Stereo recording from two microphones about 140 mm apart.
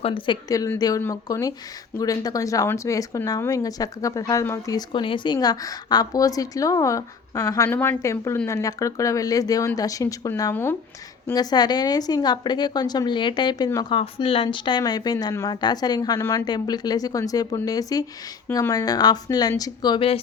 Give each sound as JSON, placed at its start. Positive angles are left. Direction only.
{"t": 0.0, "sound": "a woman's voice", "side_deg": 40}
{"t": 0.4, "sound": "speech", "side_deg": 25}
{"t": 11.3, "sound": "speech", "side_deg": 30}
{"t": 18.4, "sound": "speech", "side_deg": 15}
{"t": 18.7, "sound": "speech", "side_deg": 25}